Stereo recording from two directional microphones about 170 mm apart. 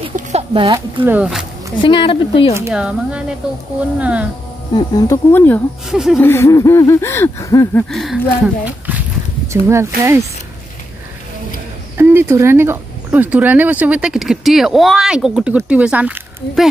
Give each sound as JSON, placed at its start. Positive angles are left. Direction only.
{"t": 0.1, "sound": "a sound", "side_deg": -40}
{"t": 1.0, "sound": "speech", "side_deg": -10}
{"t": 1.8, "sound": "speech", "side_deg": 30}
{"t": 2.7, "sound": "speech", "side_deg": -5}
{"t": 4.7, "sound": "speech", "side_deg": 20}
{"t": 5.9, "sound": "speech", "side_deg": -5}
{"t": 6.2, "sound": "speech", "side_deg": 15}
{"t": 7.9, "sound": "speech", "side_deg": 0}
{"t": 8.6, "sound": "a sound", "side_deg": -10}
{"t": 9.5, "sound": "speech", "side_deg": -15}
{"t": 12.0, "sound": "speech", "side_deg": -15}